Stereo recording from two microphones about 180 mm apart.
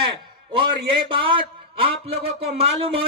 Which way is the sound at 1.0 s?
30° right (ahead or behind).